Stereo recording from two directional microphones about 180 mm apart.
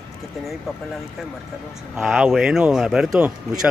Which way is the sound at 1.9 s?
5° right (ahead or behind).